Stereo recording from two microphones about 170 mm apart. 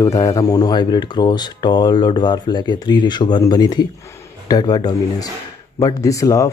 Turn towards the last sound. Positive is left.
turn(degrees=20)  # may be behind; listen again after turning